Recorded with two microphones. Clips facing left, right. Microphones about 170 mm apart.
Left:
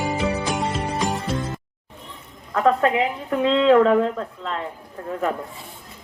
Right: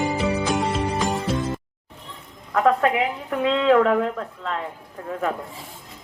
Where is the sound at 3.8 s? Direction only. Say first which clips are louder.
Left 3 dB; 25° left (ahead or behind).